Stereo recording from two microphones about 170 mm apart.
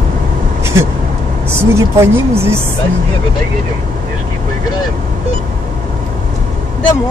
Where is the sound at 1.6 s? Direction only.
15° right (ahead or behind).